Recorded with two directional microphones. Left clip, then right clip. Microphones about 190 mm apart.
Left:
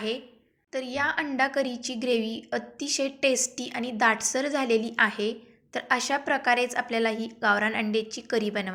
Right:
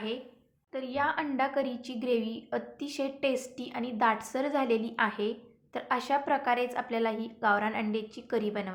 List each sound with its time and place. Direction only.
0.7 s a woman's voice: 5° left (ahead or behind)